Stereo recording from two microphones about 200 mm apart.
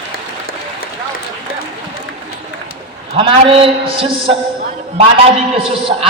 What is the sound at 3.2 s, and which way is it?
A man's voice, 25° right (ahead or behind).